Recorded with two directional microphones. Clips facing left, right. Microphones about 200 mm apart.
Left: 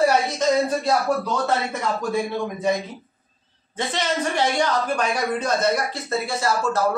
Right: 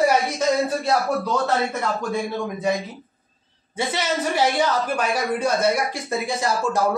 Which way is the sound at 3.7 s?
5° right (ahead or behind).